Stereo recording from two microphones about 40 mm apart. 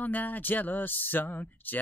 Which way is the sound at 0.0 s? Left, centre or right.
Left.